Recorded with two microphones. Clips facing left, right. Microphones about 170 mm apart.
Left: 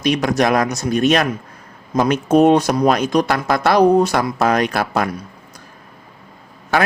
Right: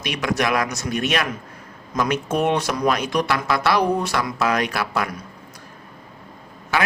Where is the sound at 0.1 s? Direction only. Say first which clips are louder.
Left 5 dB; 40° left (ahead or behind).